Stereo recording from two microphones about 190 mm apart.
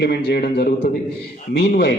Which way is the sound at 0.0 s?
60° left (ahead or behind).